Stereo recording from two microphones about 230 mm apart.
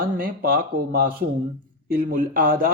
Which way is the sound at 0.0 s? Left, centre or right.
Right.